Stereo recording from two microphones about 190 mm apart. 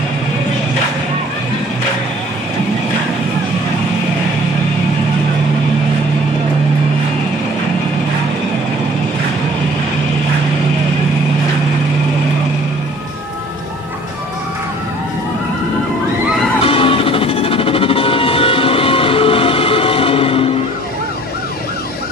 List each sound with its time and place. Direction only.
16.6 s music: 30° left (ahead or behind)